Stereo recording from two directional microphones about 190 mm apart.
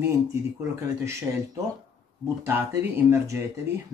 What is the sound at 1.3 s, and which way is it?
Speech, 15° right (ahead or behind).